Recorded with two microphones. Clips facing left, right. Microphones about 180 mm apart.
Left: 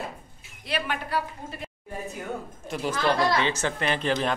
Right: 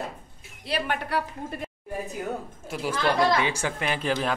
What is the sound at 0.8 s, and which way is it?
Speech, 65° right (ahead or behind).